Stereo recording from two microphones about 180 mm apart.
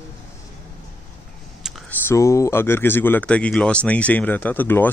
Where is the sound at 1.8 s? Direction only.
15° left (ahead or behind).